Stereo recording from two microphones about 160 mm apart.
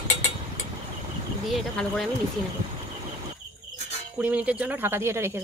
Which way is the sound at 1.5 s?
Centre (ahead or behind).